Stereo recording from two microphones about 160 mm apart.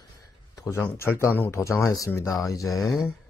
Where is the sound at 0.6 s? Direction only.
20° left (ahead or behind).